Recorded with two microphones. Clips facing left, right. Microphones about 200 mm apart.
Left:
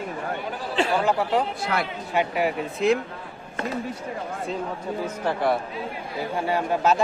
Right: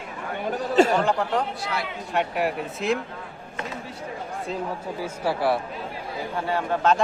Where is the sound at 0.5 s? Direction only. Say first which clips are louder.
Right 8 dB; 45° right (ahead or behind).